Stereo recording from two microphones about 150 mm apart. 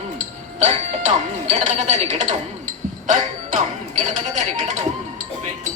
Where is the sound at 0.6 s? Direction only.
50° right (ahead or behind).